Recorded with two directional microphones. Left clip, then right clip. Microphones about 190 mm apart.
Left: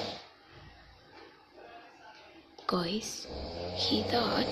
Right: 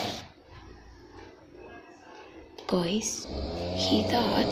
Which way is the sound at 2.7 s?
10° left (ahead or behind).